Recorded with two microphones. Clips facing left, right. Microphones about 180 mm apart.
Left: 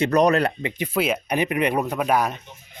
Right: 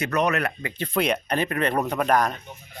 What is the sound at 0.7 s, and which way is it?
Speech, 10° left (ahead or behind).